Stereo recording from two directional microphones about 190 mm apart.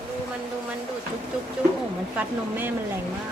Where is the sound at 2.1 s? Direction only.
10° right (ahead or behind).